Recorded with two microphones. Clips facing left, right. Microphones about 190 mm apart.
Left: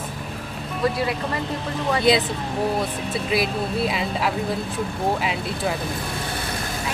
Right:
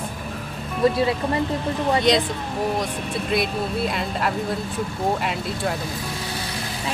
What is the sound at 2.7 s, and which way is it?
Speech, 5° left (ahead or behind).